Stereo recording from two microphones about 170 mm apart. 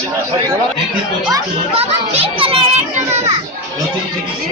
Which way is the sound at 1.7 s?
35° right (ahead or behind).